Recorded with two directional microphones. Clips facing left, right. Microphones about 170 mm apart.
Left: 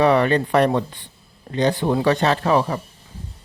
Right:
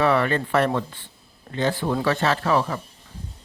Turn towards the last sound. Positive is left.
turn(degrees=20)  # may be behind; listen again after turning